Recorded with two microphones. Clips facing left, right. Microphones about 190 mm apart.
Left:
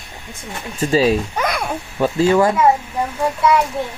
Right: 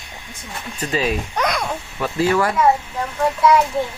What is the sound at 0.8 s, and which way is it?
Speech, 30° left (ahead or behind).